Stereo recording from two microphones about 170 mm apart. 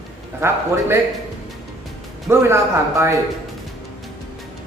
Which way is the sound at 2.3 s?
15° right (ahead or behind).